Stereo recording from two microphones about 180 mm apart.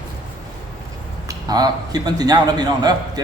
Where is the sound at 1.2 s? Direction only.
20° right (ahead or behind).